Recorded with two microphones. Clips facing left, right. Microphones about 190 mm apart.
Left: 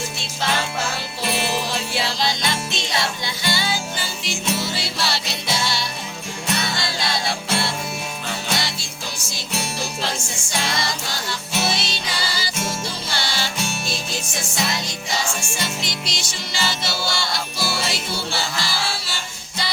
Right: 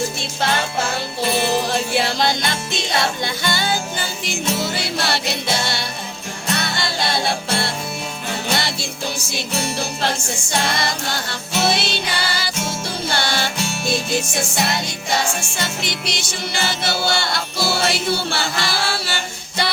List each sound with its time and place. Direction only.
1.7 s music: 55° right (ahead or behind)
10.0 s music: 60° right (ahead or behind)